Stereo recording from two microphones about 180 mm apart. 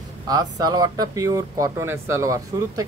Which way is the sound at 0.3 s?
20° right (ahead or behind).